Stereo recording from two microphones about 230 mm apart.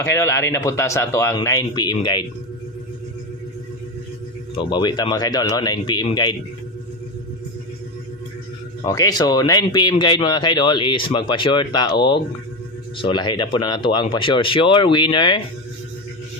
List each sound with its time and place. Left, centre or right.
0.0 s a man's voice: centre
4.5 s a man's voice: centre
8.8 s a man's voice: centre